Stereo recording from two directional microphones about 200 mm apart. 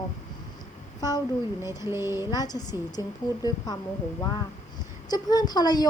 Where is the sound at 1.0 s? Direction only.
20° left (ahead or behind).